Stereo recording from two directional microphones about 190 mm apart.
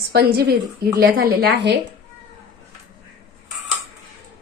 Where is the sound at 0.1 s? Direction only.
55° right (ahead or behind).